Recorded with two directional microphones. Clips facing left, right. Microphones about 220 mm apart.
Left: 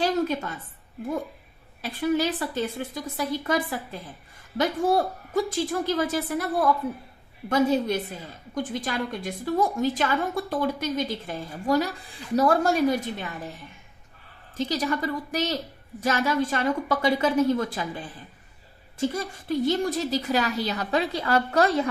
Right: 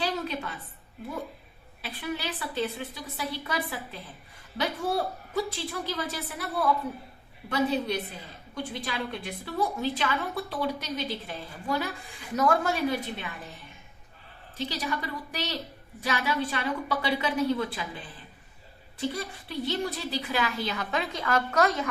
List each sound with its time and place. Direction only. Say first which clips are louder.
0.0 s a sound: left 7 dB; 45° left (ahead or behind)
1.8 s a woman's voice: left 10 dB; 45° left (ahead or behind)
14.5 s a woman's voice: left 6 dB; 45° left (ahead or behind)
18.9 s a woman's voice: left 5 dB; 45° left (ahead or behind)